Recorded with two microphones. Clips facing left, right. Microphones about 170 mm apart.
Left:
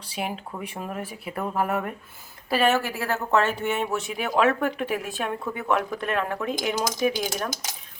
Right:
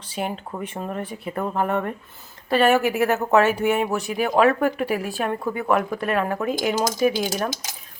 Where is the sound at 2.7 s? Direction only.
20° right (ahead or behind).